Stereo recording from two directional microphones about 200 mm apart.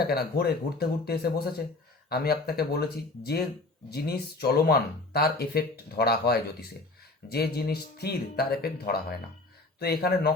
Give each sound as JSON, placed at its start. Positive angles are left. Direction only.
{"t": 0.0, "sound": "speech", "side_deg": 50}
{"t": 3.8, "sound": "speech", "side_deg": 50}